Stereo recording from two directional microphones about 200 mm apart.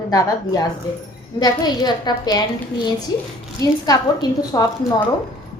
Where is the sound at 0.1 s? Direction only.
20° left (ahead or behind).